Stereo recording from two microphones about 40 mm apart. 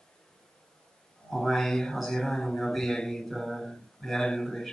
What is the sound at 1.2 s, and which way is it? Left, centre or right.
Speech, centre.